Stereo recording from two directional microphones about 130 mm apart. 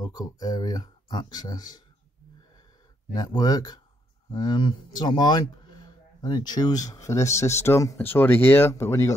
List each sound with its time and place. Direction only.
0.0 s speech: 30° left (ahead or behind)
3.1 s speech: 30° left (ahead or behind)